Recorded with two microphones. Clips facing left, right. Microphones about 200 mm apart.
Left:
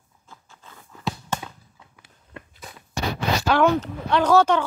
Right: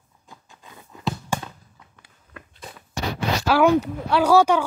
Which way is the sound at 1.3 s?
10° right (ahead or behind).